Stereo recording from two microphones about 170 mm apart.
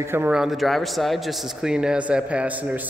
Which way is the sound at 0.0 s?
15° right (ahead or behind).